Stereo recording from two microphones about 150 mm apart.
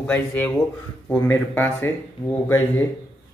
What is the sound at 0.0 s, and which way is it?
A man's voice, 10° left (ahead or behind).